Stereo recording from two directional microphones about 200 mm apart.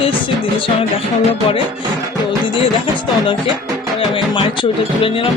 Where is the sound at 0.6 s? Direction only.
30° left (ahead or behind).